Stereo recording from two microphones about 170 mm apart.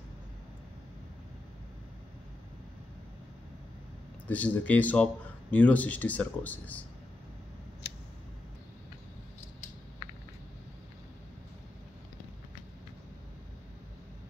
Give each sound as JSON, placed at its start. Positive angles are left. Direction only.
{"t": 4.3, "sound": "speech", "side_deg": 10}